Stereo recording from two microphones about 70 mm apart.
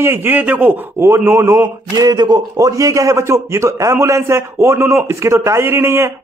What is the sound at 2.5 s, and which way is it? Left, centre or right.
A man's voice, right.